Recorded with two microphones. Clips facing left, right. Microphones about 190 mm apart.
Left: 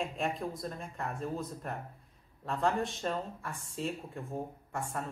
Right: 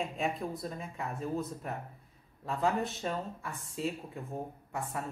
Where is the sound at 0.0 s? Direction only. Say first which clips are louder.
Even; centre (ahead or behind).